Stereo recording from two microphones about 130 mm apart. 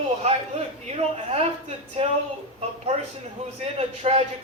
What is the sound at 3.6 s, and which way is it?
Speech, 50° right (ahead or behind).